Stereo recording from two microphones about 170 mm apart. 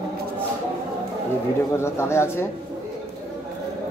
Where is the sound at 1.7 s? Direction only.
15° left (ahead or behind).